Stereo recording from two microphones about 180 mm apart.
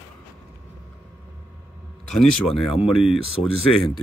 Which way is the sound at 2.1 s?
Centre (ahead or behind).